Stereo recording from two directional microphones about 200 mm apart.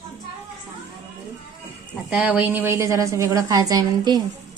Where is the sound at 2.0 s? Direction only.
5° right (ahead or behind).